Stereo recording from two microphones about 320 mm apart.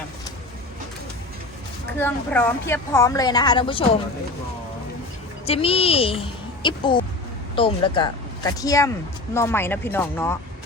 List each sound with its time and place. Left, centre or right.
2.0 s a woman's voice: centre
5.5 s a woman's voice: centre